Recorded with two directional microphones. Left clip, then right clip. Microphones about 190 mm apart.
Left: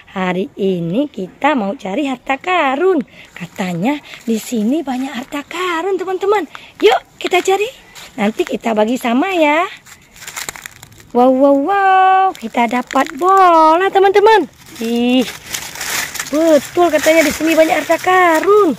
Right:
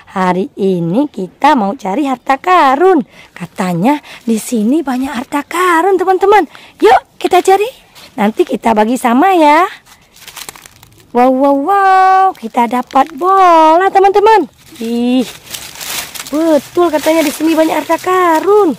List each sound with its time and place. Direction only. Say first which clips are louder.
0.1 s speech: right 6 dB; 25° right (ahead or behind)
10.2 s crushing: left 3 dB; 5° left (ahead or behind)
11.1 s speech: right 1 dB; 15° right (ahead or behind)